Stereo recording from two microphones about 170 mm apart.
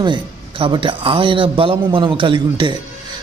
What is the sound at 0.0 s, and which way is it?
A man's voice, 25° right (ahead or behind).